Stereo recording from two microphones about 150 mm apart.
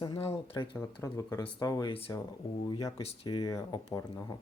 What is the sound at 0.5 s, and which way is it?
Speech, 35° left (ahead or behind).